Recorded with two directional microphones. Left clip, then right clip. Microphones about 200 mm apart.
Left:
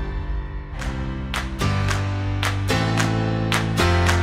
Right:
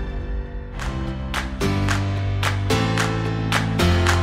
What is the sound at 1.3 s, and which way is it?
Music, centre (ahead or behind).